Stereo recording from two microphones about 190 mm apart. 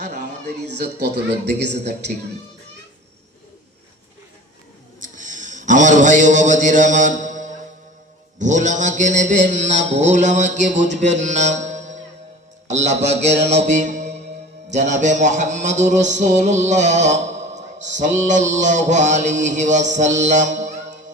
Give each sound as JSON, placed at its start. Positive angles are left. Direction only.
{"t": 0.1, "sound": "a sound", "side_deg": -40}
{"t": 1.0, "sound": "a woman's voice", "side_deg": -65}
{"t": 4.9, "sound": "a sound", "side_deg": -40}
{"t": 8.4, "sound": "a man's voice", "side_deg": -40}
{"t": 13.7, "sound": "music", "side_deg": -40}
{"t": 14.7, "sound": "a man's voice", "side_deg": -40}